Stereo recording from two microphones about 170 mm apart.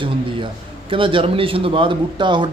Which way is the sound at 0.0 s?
30° right (ahead or behind).